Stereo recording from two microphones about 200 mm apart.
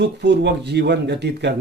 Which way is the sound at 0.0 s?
60° right (ahead or behind).